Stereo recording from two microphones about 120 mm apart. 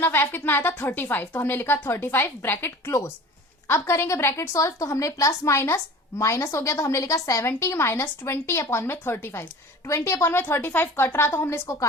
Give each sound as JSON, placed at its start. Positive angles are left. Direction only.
{"t": 0.0, "sound": "a woman's voice", "side_deg": 15}